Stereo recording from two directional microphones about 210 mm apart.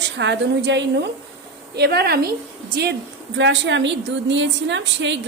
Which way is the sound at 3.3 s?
60° right (ahead or behind).